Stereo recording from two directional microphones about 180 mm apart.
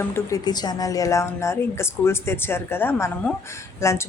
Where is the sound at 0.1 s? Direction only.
20° left (ahead or behind).